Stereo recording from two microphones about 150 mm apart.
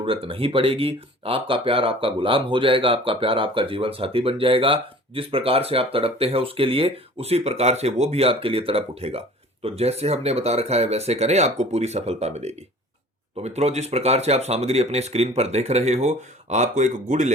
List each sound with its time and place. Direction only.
0.0 s speech: 35° right (ahead or behind); by 17.3 s 55° right (ahead or behind)